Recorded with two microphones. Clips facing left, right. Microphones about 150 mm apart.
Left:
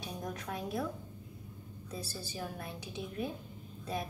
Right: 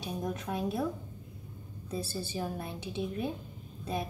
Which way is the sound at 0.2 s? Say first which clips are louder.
Right 6 dB; 25° right (ahead or behind).